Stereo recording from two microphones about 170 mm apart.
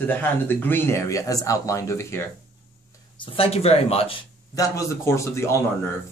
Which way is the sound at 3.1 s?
30° left (ahead or behind).